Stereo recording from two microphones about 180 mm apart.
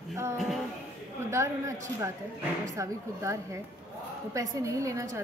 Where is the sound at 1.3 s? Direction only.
15° right (ahead or behind).